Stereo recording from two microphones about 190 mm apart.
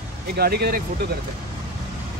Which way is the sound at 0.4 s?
55° right (ahead or behind).